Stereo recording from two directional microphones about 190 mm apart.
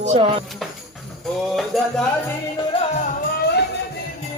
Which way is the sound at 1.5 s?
Centre (ahead or behind).